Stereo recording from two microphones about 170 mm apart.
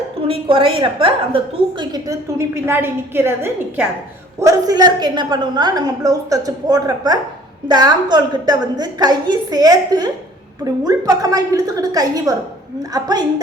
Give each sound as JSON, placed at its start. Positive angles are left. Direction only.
{"t": 0.3, "sound": "a woman's voice", "side_deg": -30}